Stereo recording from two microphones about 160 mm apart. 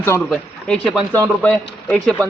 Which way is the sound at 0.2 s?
5° left (ahead or behind).